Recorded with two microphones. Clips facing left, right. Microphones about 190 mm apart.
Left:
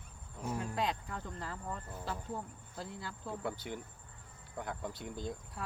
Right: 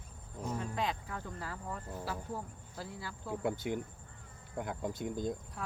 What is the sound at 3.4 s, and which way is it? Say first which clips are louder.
Speech: right 6 dB; 50° right (ahead or behind).